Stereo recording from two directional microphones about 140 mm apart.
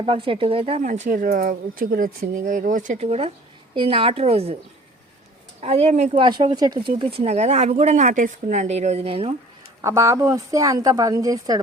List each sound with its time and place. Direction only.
0.0 s a woman's voice: 40° right (ahead or behind)
0.8 s a woman's voice: 60° right (ahead or behind)
5.5 s speech: 50° right (ahead or behind)
6.1 s a woman's voice: 35° right (ahead or behind)
7.0 s speech: 40° right (ahead or behind)
9.8 s a woman's voice: 20° right (ahead or behind)